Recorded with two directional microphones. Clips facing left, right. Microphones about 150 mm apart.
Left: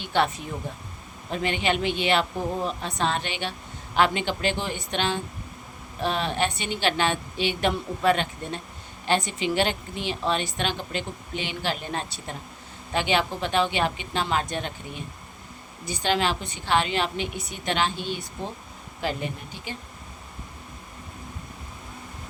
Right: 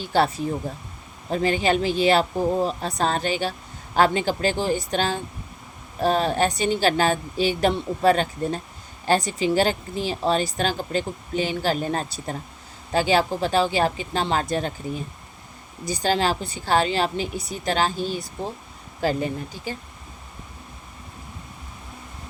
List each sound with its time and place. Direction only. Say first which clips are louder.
0.0 s a woman's voice: right 3 dB; 35° right (ahead or behind)